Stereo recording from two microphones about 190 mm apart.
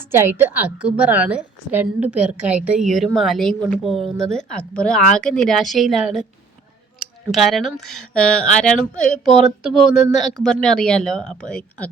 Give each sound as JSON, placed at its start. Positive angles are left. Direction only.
{"t": 0.0, "sound": "a woman's voice", "side_deg": -10}